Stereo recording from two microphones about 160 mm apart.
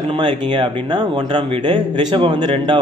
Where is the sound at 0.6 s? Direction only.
30° right (ahead or behind).